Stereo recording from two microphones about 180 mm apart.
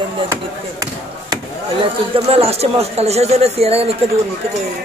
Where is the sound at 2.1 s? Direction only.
35° right (ahead or behind).